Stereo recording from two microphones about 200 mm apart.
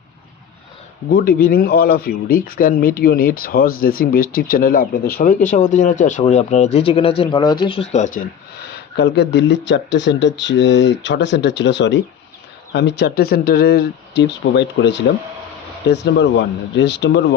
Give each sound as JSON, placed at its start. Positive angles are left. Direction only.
{"t": 1.1, "sound": "speech", "side_deg": 50}
{"t": 9.0, "sound": "speech", "side_deg": 60}